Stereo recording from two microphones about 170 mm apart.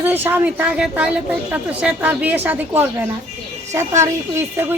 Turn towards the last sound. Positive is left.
turn(degrees=-15)  # may be behind; listen again after turning